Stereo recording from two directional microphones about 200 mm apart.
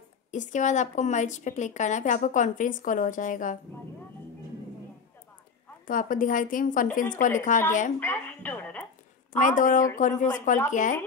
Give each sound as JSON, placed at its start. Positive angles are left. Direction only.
{"t": 0.3, "sound": "a woman's voice", "side_deg": 35}
{"t": 5.9, "sound": "a woman's voice", "side_deg": 45}
{"t": 8.0, "sound": "music", "side_deg": 10}
{"t": 9.4, "sound": "a woman's voice", "side_deg": 40}